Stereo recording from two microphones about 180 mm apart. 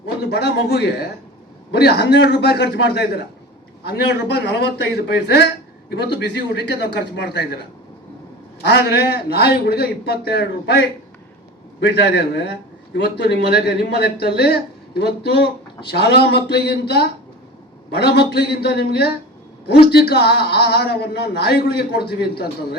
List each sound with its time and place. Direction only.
0.3 s a man's voice: 65° left (ahead or behind)
8.6 s a man's voice: 65° left (ahead or behind)